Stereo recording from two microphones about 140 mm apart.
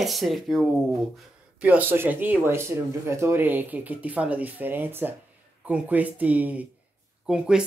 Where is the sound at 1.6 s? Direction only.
10° right (ahead or behind).